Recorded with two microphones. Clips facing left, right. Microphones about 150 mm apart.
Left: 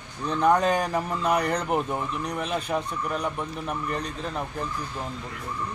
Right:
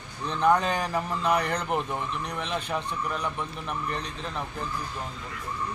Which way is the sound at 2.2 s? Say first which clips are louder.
Left 3 dB; 40° left (ahead or behind).